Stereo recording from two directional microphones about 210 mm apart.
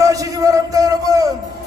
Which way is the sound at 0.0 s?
15° right (ahead or behind).